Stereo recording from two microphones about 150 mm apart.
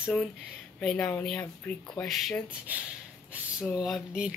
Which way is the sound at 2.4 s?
10° right (ahead or behind).